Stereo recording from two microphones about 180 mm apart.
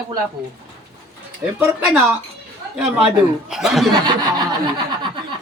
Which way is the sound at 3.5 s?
Centre (ahead or behind).